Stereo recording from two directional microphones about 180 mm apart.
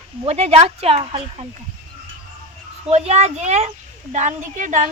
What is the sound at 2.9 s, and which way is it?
Speech, 35° right (ahead or behind).